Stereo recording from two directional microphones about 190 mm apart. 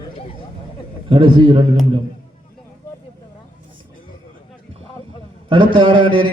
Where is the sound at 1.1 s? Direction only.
25° right (ahead or behind).